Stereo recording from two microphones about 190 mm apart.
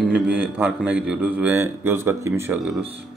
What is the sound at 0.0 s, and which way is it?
Speech, 5° right (ahead or behind).